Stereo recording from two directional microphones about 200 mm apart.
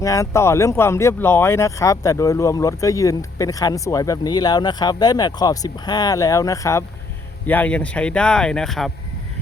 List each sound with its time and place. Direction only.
0.0 s speech: 15° left (ahead or behind)